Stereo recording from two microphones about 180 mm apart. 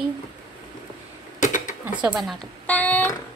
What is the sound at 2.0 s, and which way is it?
Speech, 5° right (ahead or behind).